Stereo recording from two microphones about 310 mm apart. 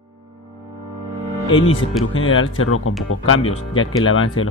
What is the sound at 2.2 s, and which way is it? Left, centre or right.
Speech, left.